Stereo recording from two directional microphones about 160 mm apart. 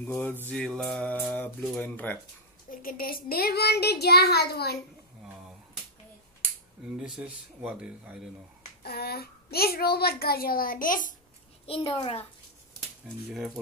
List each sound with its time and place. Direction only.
0.0 s speech: 10° left (ahead or behind)
0.5 s mantra: 5° left (ahead or behind)
1.8 s speech: 10° left (ahead or behind)
2.7 s a child's voice: 60° left (ahead or behind); by 4.7 s 85° left
7.0 s speech: 5° right (ahead or behind)
8.8 s a child's voice: 80° left; by 11.1 s 60° left (ahead or behind)
11.6 s a child's voice: 35° left (ahead or behind)